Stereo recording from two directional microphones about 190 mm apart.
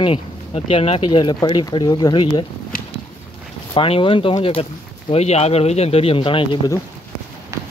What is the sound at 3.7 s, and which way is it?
Speech, 30° left (ahead or behind).